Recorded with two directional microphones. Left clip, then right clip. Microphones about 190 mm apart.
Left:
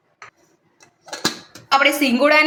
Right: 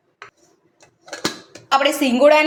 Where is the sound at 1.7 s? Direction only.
20° right (ahead or behind).